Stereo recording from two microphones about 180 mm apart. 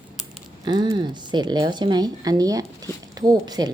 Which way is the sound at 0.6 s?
25° right (ahead or behind).